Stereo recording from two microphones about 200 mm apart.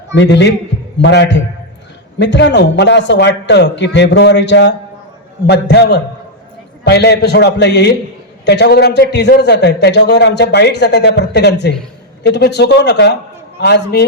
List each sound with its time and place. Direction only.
0.1 s a man's voice: 60° left (ahead or behind)